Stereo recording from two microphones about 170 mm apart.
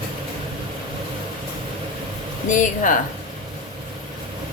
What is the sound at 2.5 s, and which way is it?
Speech, 50° left (ahead or behind).